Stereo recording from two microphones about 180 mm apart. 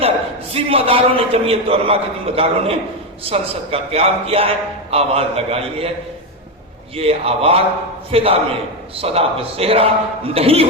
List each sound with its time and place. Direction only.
0.5 s a man's voice: 30° right (ahead or behind)
6.9 s a man's voice: 35° right (ahead or behind)